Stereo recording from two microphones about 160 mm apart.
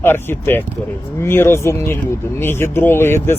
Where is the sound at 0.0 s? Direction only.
15° left (ahead or behind).